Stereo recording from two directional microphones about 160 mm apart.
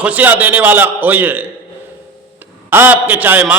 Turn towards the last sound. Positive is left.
turn(degrees=-10)  # may be behind; listen again after turning